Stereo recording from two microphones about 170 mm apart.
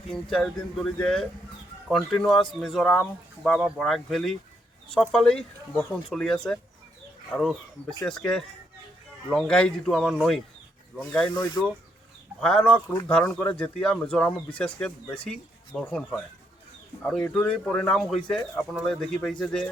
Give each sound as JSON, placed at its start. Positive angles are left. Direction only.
{"t": 0.1, "sound": "speech", "side_deg": 0}
{"t": 11.3, "sound": "speech", "side_deg": 25}
{"t": 12.4, "sound": "speech", "side_deg": 5}